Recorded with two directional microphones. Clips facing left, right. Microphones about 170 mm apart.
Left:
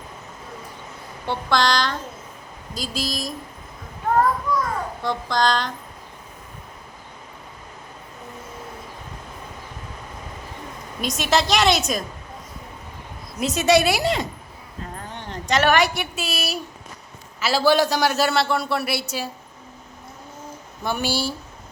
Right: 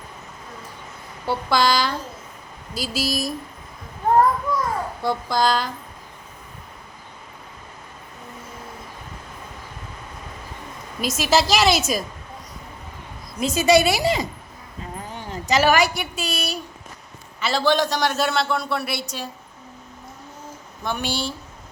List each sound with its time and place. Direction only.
1.3 s a woman's voice: 5° right (ahead or behind)
4.5 s children playing: 25° right (ahead or behind)
5.0 s a woman's voice: 5° right (ahead or behind)
11.0 s a man's voice: centre (ahead or behind)
13.4 s a man's voice: centre (ahead or behind)
20.8 s a man's voice: 5° left (ahead or behind)